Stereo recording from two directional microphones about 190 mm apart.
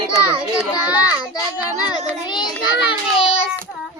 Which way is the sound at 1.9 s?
25° left (ahead or behind).